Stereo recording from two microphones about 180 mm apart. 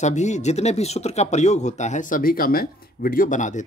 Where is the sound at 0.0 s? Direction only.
40° left (ahead or behind).